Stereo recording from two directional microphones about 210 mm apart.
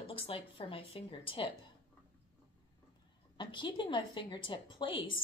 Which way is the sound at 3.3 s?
20° left (ahead or behind).